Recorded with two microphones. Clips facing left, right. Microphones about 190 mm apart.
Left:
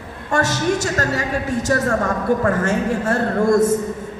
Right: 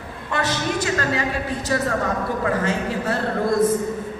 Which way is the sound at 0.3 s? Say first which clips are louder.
Left 5 dB; 45° left (ahead or behind).